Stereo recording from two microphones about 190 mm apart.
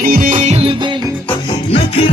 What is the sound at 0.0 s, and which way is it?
Music, 45° right (ahead or behind).